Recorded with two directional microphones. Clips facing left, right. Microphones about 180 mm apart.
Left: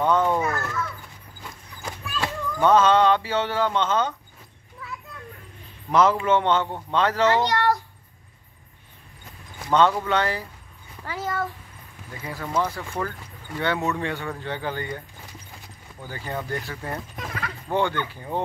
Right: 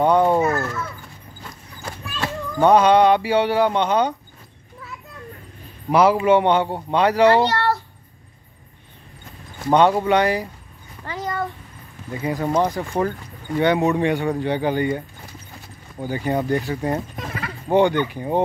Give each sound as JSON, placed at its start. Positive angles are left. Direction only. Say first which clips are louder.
{"t": 0.2, "sound": "a sound", "louder": "right 5 dB", "side_deg": -30}
{"t": 0.5, "sound": "dog", "louder": "right 5 dB", "side_deg": -20}
{"t": 1.9, "sound": "children playing", "louder": "right 1 dB", "side_deg": 0}
{"t": 2.5, "sound": "speech", "louder": "right 4 dB", "side_deg": -15}
{"t": 5.9, "sound": "speech", "louder": "right 4 dB", "side_deg": -10}
{"t": 7.4, "sound": "child singing", "louder": "right 1 dB", "side_deg": 15}
{"t": 10.0, "sound": "speech", "louder": "right 6 dB", "side_deg": -15}
{"t": 11.1, "sound": "speech", "louder": "right 2 dB", "side_deg": 5}
{"t": 12.1, "sound": "speech", "louder": "right 10 dB", "side_deg": -20}
{"t": 12.6, "sound": "speech", "louder": "right 7 dB", "side_deg": -40}
{"t": 13.6, "sound": "speech", "louder": "right 7 dB", "side_deg": -15}
{"t": 16.1, "sound": "speech", "louder": "right 9 dB", "side_deg": -15}
{"t": 17.1, "sound": "a sound", "louder": "right 3 dB", "side_deg": -5}
{"t": 17.6, "sound": "speech", "louder": "right 8 dB", "side_deg": -15}